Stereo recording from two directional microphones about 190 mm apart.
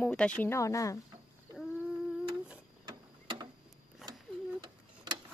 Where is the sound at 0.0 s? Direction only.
5° left (ahead or behind).